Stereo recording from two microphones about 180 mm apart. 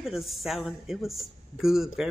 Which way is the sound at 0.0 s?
Centre (ahead or behind).